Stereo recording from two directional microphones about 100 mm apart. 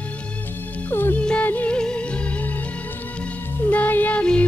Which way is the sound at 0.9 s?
20° left (ahead or behind).